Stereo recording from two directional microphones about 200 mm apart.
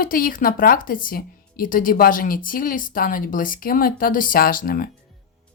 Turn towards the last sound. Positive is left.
turn(degrees=45)  # may be behind; listen again after turning